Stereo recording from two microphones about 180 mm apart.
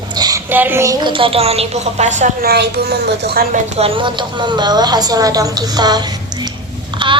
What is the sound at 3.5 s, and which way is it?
A woman's voice, 35° right (ahead or behind).